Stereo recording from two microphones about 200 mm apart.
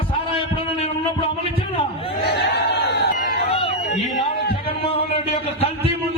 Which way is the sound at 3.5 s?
30° left (ahead or behind).